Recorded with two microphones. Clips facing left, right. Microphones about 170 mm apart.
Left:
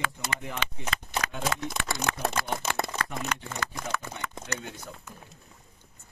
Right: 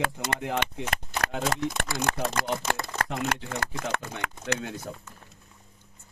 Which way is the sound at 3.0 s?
60° right (ahead or behind).